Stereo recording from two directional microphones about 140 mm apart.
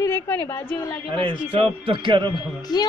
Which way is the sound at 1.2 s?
40° right (ahead or behind).